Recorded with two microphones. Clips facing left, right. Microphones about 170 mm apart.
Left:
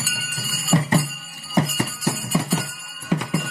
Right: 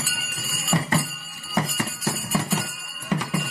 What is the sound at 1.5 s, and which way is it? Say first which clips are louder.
Music: left 4 dB; 15° left (ahead or behind).